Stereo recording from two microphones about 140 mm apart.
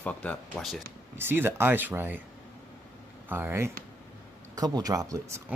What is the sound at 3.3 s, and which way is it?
Speech, 15° right (ahead or behind).